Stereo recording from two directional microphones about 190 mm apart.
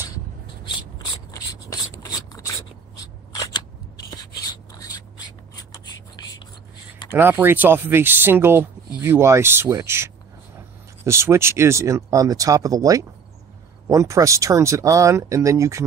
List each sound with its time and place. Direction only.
0.7 s rub: 25° left (ahead or behind)
3.0 s scissors: 20° left (ahead or behind)
6.1 s whispering: 20° left (ahead or behind)
7.2 s speech: 10° right (ahead or behind)